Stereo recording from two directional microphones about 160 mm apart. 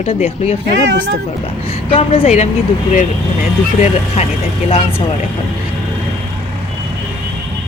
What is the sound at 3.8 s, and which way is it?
Speech, 45° left (ahead or behind).